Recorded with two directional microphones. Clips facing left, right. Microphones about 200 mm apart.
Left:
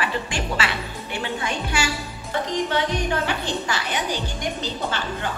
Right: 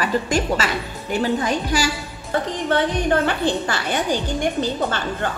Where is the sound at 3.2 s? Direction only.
50° right (ahead or behind).